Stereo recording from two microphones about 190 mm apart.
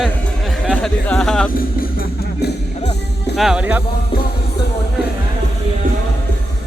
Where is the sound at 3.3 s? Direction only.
Centre (ahead or behind).